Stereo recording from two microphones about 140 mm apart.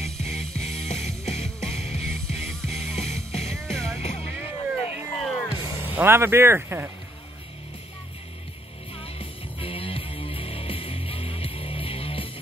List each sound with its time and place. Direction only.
0.0 s music: 50° left (ahead or behind)
3.5 s music: centre (ahead or behind)
4.0 s music: 50° left (ahead or behind)
5.2 s music: centre (ahead or behind)
5.5 s music: 40° left (ahead or behind)
5.9 s speech: 15° right (ahead or behind)
8.9 s music: 40° left (ahead or behind)